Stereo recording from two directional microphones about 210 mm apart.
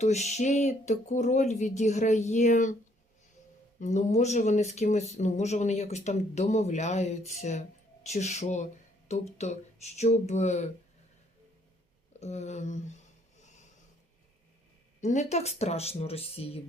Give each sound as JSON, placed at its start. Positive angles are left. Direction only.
{"t": 0.0, "sound": "speech", "side_deg": 30}
{"t": 3.8, "sound": "speech", "side_deg": 35}
{"t": 12.2, "sound": "speech", "side_deg": 30}
{"t": 15.0, "sound": "speech", "side_deg": 35}